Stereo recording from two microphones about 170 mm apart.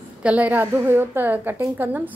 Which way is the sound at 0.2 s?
10° right (ahead or behind).